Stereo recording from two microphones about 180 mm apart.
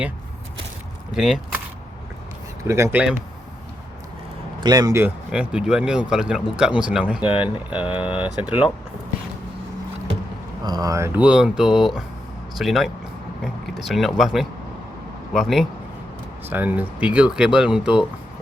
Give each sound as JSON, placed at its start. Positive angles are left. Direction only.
{"t": 1.1, "sound": "speech", "side_deg": 0}
{"t": 2.6, "sound": "speech", "side_deg": -15}
{"t": 4.6, "sound": "speech", "side_deg": -20}
{"t": 7.9, "sound": "speech", "side_deg": 30}
{"t": 8.1, "sound": "speech", "side_deg": -5}
{"t": 10.6, "sound": "speech", "side_deg": -20}